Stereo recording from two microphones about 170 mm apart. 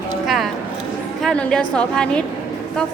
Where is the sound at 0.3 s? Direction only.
Centre (ahead or behind).